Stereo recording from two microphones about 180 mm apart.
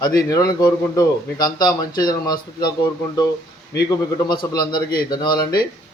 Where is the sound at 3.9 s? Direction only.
20° left (ahead or behind).